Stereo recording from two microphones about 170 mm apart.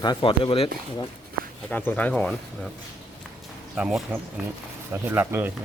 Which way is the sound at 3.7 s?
5° right (ahead or behind).